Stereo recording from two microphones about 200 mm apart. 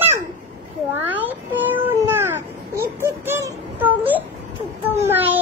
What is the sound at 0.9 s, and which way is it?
Cat, 10° right (ahead or behind).